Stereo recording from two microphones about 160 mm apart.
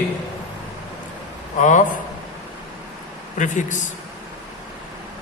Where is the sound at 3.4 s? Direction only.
50° left (ahead or behind).